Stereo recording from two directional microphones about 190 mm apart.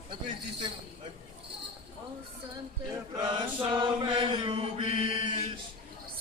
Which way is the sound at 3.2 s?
25° right (ahead or behind).